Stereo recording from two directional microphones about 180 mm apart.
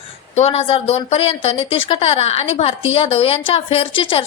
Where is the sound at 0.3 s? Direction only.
35° left (ahead or behind).